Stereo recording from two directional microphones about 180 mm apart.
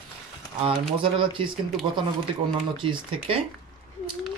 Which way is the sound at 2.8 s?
30° right (ahead or behind).